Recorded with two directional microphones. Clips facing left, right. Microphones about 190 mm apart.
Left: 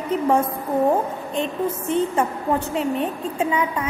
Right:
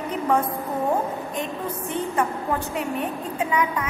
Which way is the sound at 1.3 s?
25° left (ahead or behind).